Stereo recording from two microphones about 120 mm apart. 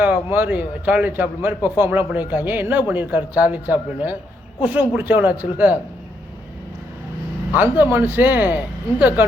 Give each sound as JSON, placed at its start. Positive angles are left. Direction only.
{"t": 0.0, "sound": "speech", "side_deg": -15}
{"t": 7.5, "sound": "speech", "side_deg": -15}